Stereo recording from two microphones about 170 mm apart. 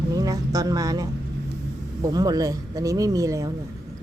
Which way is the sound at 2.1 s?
20° right (ahead or behind).